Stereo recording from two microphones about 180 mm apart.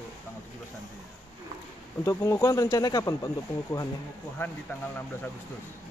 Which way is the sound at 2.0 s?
15° left (ahead or behind).